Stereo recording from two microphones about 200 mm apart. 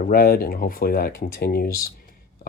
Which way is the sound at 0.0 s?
50° left (ahead or behind).